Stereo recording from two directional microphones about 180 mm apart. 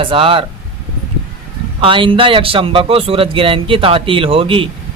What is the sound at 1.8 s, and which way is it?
A man's voice, 30° right (ahead or behind).